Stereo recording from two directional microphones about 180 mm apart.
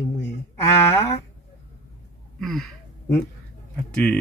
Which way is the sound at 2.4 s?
Centre (ahead or behind).